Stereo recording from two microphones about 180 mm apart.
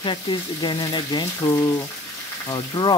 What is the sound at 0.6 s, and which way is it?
Frying, 25° left (ahead or behind).